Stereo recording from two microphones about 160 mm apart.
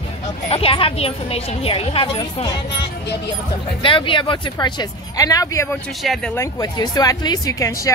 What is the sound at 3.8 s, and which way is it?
Speech, 30° left (ahead or behind).